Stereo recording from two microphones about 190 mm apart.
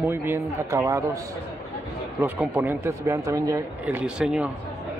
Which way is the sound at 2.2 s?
10° right (ahead or behind).